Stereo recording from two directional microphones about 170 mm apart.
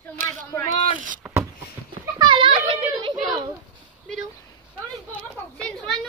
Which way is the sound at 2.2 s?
30° right (ahead or behind).